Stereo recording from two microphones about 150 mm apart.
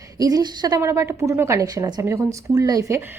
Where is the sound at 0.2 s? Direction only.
25° right (ahead or behind).